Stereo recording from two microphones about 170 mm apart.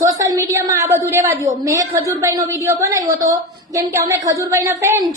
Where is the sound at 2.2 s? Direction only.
20° right (ahead or behind).